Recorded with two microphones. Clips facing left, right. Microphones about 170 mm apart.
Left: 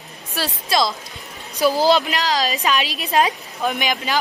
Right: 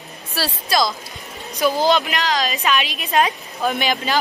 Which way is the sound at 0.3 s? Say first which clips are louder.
Even; 20° left (ahead or behind).